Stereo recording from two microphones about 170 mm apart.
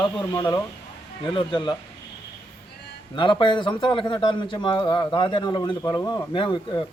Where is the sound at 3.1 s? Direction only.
30° left (ahead or behind).